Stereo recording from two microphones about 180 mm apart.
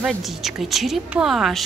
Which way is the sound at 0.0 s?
Centre (ahead or behind).